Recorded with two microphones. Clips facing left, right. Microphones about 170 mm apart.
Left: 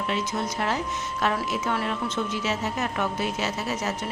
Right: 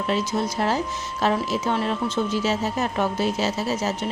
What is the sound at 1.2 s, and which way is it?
A woman's voice, 30° right (ahead or behind).